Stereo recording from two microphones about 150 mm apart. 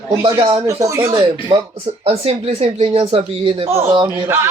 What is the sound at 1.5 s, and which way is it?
Speech, 30° right (ahead or behind).